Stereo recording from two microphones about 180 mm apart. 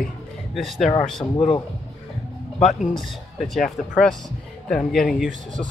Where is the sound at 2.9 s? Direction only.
Centre (ahead or behind).